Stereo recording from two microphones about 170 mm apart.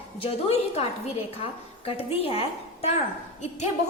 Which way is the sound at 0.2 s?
35° left (ahead or behind).